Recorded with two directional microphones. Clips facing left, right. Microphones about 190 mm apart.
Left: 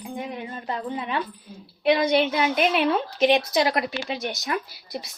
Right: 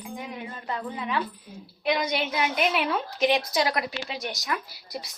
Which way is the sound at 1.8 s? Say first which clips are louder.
Left 7 dB; 30° left (ahead or behind).